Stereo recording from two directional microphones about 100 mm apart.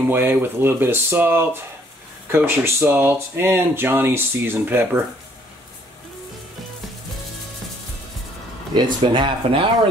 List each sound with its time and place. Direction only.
0.1 s speech: 20° right (ahead or behind)
8.7 s speech: 50° right (ahead or behind)